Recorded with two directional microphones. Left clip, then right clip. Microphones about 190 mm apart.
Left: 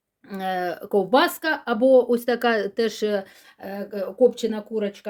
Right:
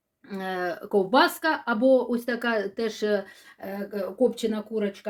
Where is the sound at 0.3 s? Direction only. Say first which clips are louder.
Left 4 dB; 30° left (ahead or behind).